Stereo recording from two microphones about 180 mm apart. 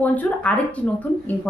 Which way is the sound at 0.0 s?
10° left (ahead or behind).